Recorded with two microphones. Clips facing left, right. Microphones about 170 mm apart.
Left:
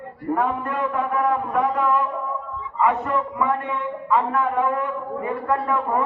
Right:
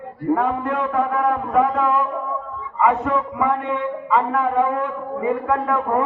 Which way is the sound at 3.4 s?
90° right.